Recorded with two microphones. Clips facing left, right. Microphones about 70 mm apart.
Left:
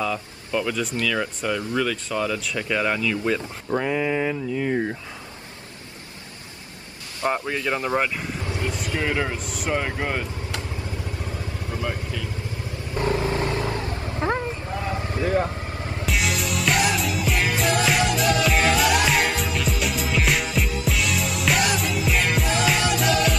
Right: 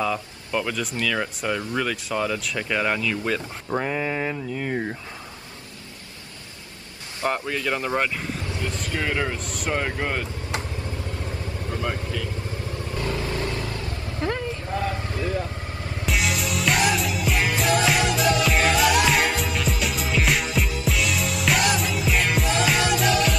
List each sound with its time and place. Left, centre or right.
0.0 s speech: centre
7.2 s speech: centre
8.5 s vehicle: left
9.0 s speech: centre
12.9 s vehicle: left
15.2 s vehicle: left
16.1 s music: centre